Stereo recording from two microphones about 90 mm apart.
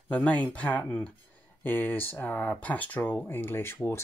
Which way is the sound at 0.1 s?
15° left (ahead or behind).